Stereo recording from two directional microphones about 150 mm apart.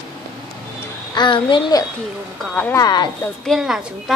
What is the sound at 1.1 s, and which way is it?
A child's voice, 30° left (ahead or behind).